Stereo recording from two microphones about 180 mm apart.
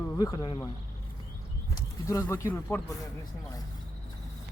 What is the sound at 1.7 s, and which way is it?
Speech, 15° left (ahead or behind).